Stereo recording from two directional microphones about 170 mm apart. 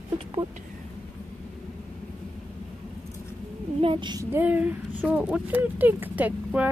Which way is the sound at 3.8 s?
30° right (ahead or behind).